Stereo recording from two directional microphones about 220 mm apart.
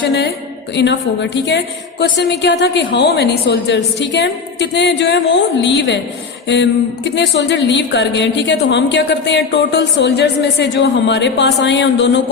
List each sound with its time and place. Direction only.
0.8 s speech: 50° left (ahead or behind)